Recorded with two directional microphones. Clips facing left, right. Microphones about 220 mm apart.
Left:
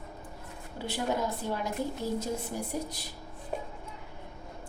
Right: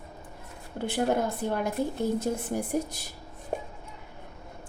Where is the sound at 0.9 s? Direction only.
55° right (ahead or behind).